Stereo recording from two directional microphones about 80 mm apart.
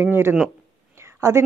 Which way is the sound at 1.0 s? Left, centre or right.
Right.